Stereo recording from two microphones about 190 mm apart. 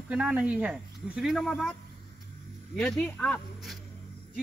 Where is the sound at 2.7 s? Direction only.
5° left (ahead or behind).